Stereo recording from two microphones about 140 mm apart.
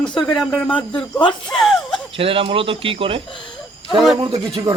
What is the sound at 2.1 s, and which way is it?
Speech, 40° right (ahead or behind).